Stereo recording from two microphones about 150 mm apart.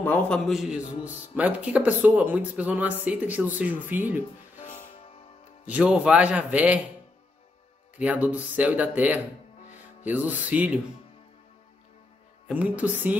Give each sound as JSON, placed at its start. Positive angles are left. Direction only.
{"t": 0.0, "sound": "a man's voice", "side_deg": 10}
{"t": 0.5, "sound": "a man's voice", "side_deg": -5}
{"t": 4.6, "sound": "music", "side_deg": 55}
{"t": 5.7, "sound": "speech", "side_deg": -10}
{"t": 8.0, "sound": "speech", "side_deg": -10}
{"t": 12.4, "sound": "speech", "side_deg": -10}